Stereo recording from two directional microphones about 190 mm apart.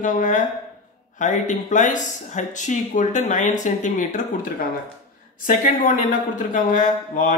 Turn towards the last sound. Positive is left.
turn(degrees=45)  # may be behind; listen again after turning